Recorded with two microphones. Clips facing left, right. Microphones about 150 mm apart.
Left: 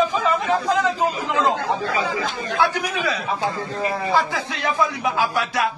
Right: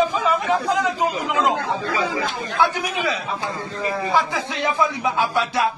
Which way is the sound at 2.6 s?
20° right (ahead or behind).